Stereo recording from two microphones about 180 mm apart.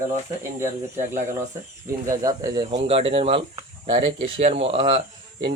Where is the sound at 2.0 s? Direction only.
20° right (ahead or behind).